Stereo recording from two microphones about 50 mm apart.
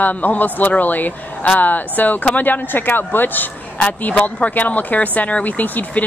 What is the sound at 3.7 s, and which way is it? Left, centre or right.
Speech, left.